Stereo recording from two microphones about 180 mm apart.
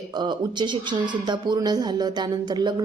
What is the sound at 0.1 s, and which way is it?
A woman's voice, 25° right (ahead or behind).